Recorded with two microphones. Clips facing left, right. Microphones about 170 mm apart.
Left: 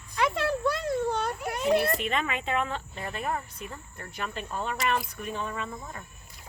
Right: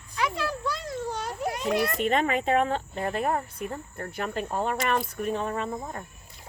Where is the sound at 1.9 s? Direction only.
40° right (ahead or behind).